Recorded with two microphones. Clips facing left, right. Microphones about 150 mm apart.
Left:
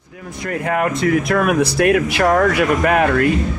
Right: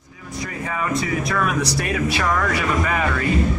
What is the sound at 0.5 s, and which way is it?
Speech, 70° left (ahead or behind).